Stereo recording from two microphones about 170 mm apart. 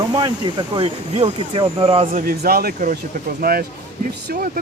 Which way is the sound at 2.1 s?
65° right (ahead or behind).